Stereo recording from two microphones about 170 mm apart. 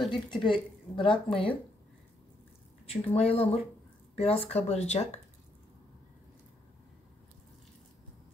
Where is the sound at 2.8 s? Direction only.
35° left (ahead or behind).